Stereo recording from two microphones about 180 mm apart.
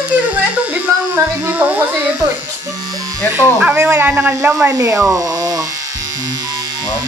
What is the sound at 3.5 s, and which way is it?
Speech, 5° right (ahead or behind).